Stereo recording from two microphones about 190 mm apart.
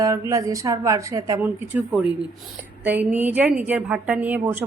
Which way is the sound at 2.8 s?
10° right (ahead or behind).